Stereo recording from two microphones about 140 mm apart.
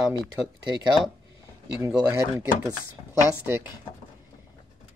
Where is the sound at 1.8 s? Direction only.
25° right (ahead or behind).